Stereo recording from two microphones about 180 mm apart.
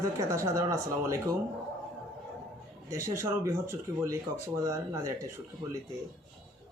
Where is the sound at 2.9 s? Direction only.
15° right (ahead or behind).